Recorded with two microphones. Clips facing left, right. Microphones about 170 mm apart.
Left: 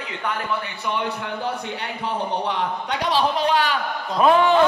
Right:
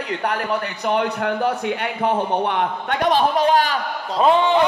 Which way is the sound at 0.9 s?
55° right (ahead or behind).